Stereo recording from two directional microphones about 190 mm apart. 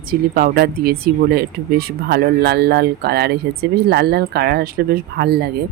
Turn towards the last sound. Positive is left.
turn(degrees=-55)  # may be behind; listen again after turning